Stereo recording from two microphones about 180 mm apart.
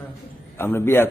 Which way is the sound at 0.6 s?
15° left (ahead or behind).